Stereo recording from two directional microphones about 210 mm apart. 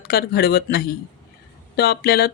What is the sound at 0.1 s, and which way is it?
Speech, 50° left (ahead or behind).